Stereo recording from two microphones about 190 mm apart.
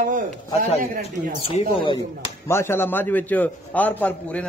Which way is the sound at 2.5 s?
10° left (ahead or behind).